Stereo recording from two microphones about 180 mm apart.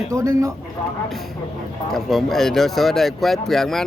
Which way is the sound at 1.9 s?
Centre (ahead or behind).